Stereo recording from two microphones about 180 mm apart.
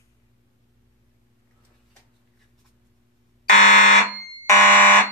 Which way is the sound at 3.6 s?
45° left (ahead or behind).